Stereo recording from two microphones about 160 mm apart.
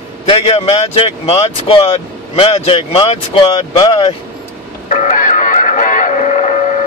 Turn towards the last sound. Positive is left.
turn(degrees=45)  # may be behind; listen again after turning